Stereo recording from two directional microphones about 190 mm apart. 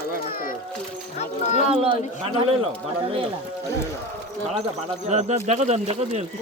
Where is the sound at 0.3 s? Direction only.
50° left (ahead or behind).